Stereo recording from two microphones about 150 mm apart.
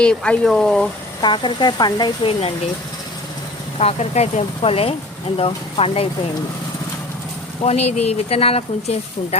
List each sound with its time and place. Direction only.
0.0 s speech: 5° left (ahead or behind)
1.2 s speech: 30° left (ahead or behind)
3.8 s speech: 45° left (ahead or behind)
7.6 s speech: 45° left (ahead or behind)